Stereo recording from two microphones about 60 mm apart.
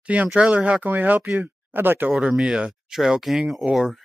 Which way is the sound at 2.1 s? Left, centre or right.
Centre.